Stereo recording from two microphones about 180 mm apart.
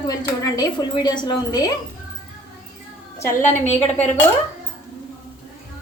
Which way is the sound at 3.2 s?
45° left (ahead or behind).